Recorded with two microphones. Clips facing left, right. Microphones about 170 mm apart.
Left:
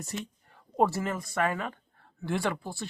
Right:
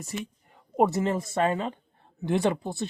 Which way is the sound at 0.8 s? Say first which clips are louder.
Right 3 dB; 20° right (ahead or behind).